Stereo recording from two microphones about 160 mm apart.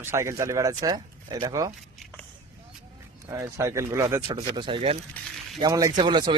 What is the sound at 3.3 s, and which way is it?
Speech, 20° right (ahead or behind).